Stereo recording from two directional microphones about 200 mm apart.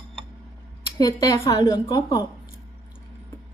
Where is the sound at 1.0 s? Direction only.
20° left (ahead or behind).